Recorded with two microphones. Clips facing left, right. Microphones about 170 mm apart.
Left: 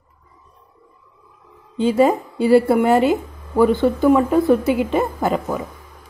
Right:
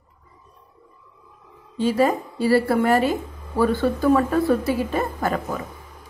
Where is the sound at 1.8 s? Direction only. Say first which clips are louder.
Left 4 dB; 20° left (ahead or behind).